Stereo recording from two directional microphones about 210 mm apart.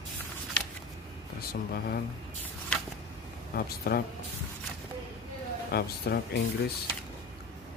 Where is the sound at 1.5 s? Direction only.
45° left (ahead or behind).